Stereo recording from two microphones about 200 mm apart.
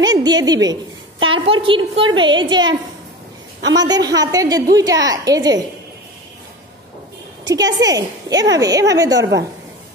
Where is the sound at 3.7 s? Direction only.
20° right (ahead or behind).